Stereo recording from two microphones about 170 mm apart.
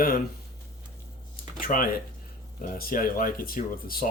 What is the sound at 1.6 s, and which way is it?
Speech, 55° left (ahead or behind).